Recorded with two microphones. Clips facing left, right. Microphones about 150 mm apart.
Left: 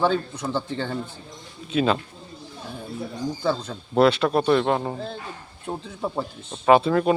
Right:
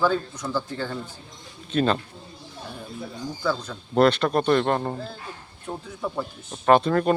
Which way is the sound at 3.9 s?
5° left (ahead or behind).